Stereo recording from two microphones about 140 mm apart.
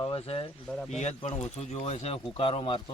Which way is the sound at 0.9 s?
50° left (ahead or behind).